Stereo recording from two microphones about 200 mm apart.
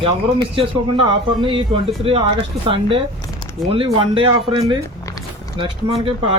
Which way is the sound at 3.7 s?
25° right (ahead or behind).